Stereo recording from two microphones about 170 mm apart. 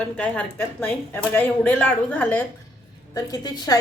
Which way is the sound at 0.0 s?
5° left (ahead or behind).